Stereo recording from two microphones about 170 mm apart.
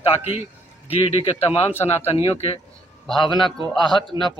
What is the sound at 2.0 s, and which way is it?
Speech, 35° left (ahead or behind).